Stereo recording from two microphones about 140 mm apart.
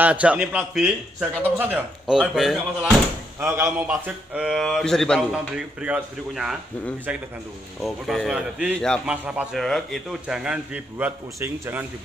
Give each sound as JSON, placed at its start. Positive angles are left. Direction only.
{"t": 0.0, "sound": "a man's voice", "side_deg": -10}
{"t": 3.3, "sound": "a man's voice", "side_deg": -15}
{"t": 3.8, "sound": "speech", "side_deg": -5}
{"t": 5.3, "sound": "a man's voice", "side_deg": -10}
{"t": 8.7, "sound": "speech", "side_deg": 5}
{"t": 9.0, "sound": "a man's voice", "side_deg": -10}
{"t": 9.6, "sound": "a man's voice", "side_deg": 0}